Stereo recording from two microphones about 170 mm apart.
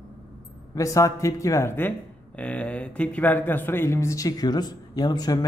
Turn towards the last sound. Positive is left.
turn(degrees=20)  # may be behind; listen again after turning